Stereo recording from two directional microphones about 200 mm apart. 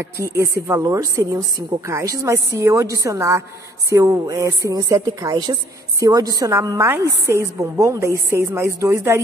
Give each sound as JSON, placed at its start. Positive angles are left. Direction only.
{"t": 0.0, "sound": "a woman's voice", "side_deg": -15}